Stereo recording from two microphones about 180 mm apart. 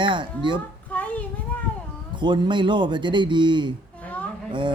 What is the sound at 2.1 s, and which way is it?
Speech, 25° right (ahead or behind).